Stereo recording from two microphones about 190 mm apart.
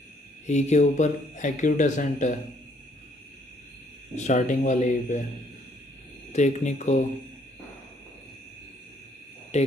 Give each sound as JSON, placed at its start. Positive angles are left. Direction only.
{"t": 0.5, "sound": "speech", "side_deg": 40}
{"t": 4.1, "sound": "speech", "side_deg": 40}
{"t": 6.3, "sound": "speech", "side_deg": 40}
{"t": 9.5, "sound": "speech", "side_deg": 35}